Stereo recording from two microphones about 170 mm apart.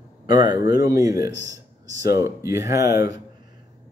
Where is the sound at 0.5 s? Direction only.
25° right (ahead or behind).